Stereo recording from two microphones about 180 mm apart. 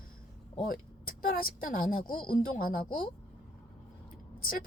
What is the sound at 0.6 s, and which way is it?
Speech, 55° left (ahead or behind).